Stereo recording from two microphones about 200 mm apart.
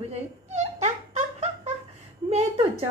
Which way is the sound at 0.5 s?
35° right (ahead or behind).